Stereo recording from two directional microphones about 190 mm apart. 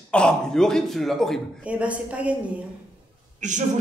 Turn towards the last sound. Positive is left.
turn(degrees=-40)  # may be behind; listen again after turning